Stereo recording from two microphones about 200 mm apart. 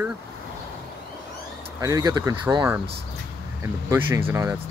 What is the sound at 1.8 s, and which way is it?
Speech, 20° right (ahead or behind).